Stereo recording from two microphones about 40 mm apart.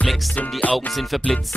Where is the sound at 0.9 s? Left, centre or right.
Centre.